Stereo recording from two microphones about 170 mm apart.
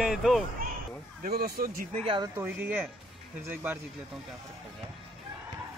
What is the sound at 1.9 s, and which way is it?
Speech, 35° right (ahead or behind).